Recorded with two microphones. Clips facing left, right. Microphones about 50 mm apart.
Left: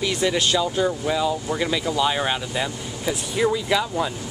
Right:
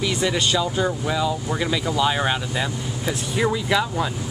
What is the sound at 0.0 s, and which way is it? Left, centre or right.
Speech, centre.